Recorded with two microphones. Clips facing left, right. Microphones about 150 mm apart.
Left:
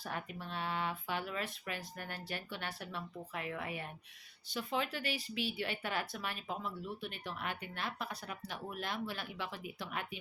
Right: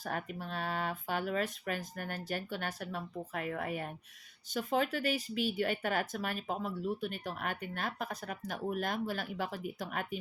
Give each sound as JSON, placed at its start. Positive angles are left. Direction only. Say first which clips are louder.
{"t": 0.0, "sound": "speech", "louder": "right 4 dB", "side_deg": -45}